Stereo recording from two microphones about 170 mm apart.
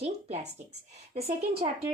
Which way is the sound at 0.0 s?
40° right (ahead or behind).